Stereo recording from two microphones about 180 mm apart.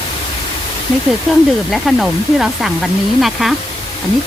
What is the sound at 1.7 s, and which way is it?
Speech, centre (ahead or behind).